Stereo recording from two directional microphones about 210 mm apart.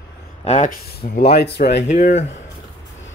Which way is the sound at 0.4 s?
35° left (ahead or behind).